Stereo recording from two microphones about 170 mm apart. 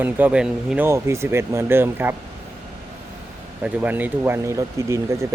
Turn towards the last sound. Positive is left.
turn(degrees=-15)  # may be behind; listen again after turning